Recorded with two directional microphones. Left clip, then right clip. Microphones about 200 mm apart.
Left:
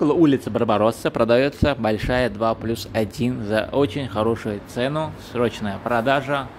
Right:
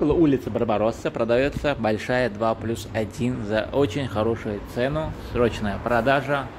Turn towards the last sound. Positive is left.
turn(degrees=10)  # may be behind; listen again after turning